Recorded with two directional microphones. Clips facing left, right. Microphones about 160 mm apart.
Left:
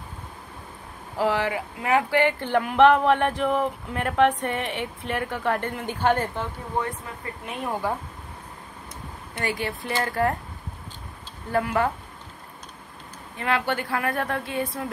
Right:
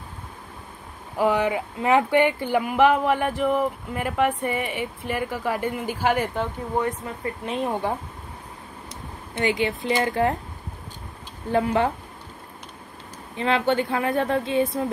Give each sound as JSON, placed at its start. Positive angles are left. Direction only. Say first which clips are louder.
{"t": 1.1, "sound": "speech", "louder": "right 3 dB", "side_deg": -20}
{"t": 7.4, "sound": "speech", "louder": "right 2 dB", "side_deg": -20}
{"t": 9.3, "sound": "speech", "louder": "right 5 dB", "side_deg": -20}
{"t": 11.5, "sound": "speech", "louder": "right 2 dB", "side_deg": -25}
{"t": 13.4, "sound": "speech", "louder": "right 4 dB", "side_deg": -25}